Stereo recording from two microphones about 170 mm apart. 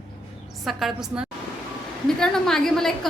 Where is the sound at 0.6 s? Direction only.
Centre (ahead or behind).